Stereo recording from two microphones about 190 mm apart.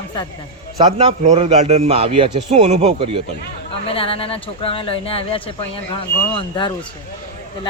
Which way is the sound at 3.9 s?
30° left (ahead or behind).